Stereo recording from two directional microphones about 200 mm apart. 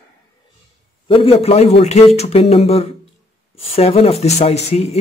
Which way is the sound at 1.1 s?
30° left (ahead or behind).